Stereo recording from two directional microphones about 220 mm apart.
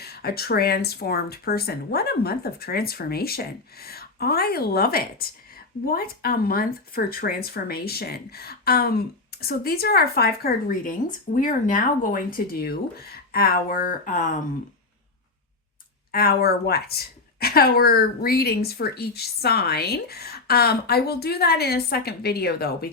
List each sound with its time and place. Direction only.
0.0 s speech: 45° left (ahead or behind)
16.1 s speech: 45° left (ahead or behind)